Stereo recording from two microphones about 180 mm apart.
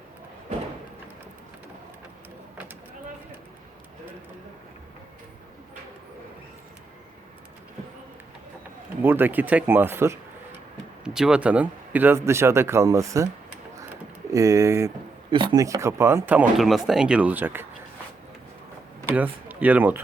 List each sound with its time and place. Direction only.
9.0 s speech: 10° right (ahead or behind)
14.3 s speech: 15° right (ahead or behind)
15.3 s speech: 25° right (ahead or behind)
19.1 s speech: 10° right (ahead or behind)